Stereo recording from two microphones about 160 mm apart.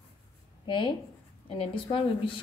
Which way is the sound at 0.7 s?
30° left (ahead or behind).